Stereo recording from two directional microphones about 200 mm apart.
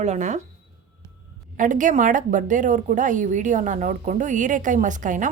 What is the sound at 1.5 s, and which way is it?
A woman's voice, 40° right (ahead or behind).